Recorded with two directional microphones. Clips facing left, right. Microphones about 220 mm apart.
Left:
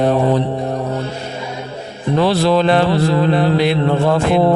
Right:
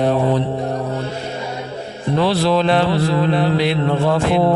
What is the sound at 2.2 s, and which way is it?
Speech, 45° left (ahead or behind).